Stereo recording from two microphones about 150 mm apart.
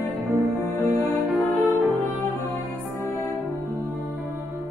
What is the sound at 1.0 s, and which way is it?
Music, centre (ahead or behind).